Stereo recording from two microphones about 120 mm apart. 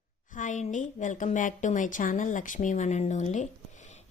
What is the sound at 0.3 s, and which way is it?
A woman's voice, 90° left.